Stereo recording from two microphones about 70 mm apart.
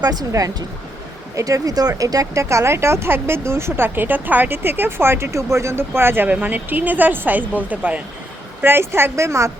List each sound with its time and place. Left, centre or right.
0.0 s a woman's voice: right; by 8.0 s centre
8.6 s speech: right